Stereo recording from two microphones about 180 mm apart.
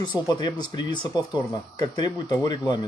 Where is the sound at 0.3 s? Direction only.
25° left (ahead or behind).